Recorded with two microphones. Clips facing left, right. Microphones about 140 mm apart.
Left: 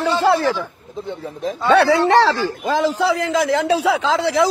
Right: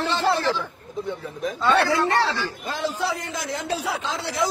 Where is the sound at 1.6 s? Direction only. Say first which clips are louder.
Left 7 dB; 70° left (ahead or behind).